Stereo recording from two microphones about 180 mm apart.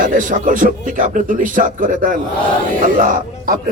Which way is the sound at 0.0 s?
45° right (ahead or behind).